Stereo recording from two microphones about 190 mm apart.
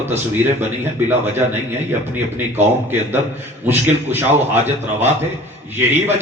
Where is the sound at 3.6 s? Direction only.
10° right (ahead or behind).